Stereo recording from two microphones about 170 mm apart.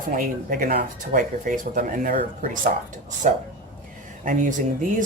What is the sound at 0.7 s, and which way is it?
Speech, 50° right (ahead or behind).